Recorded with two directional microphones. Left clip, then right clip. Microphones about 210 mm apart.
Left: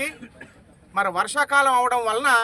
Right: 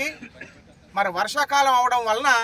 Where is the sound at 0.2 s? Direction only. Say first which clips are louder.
Right 3 dB; 35° left (ahead or behind).